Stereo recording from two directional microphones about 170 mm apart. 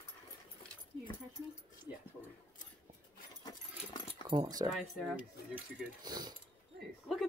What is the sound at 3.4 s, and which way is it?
Dog, 25° left (ahead or behind).